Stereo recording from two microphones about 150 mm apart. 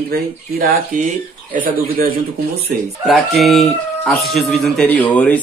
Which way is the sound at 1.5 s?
70° right (ahead or behind).